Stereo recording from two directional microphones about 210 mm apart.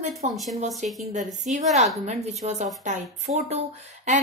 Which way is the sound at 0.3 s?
Centre (ahead or behind).